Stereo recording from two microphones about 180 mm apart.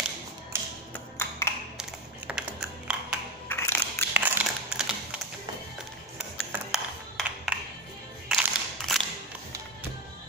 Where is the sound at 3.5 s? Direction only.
10° left (ahead or behind).